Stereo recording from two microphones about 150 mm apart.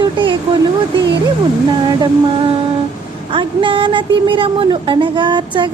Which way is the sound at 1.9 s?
30° right (ahead or behind).